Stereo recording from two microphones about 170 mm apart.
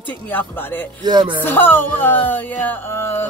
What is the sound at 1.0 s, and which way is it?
Speech, 25° right (ahead or behind).